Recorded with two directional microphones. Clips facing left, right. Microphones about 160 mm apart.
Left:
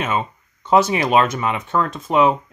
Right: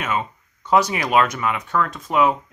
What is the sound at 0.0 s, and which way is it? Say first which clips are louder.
Speech: left 2 dB; 25° left (ahead or behind).